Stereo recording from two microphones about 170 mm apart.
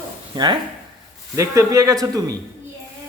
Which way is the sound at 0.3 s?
25° right (ahead or behind).